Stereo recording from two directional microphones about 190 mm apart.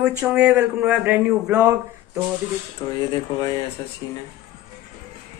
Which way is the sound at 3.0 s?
20° left (ahead or behind).